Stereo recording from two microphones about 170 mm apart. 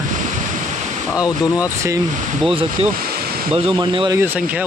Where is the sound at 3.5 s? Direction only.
30° right (ahead or behind).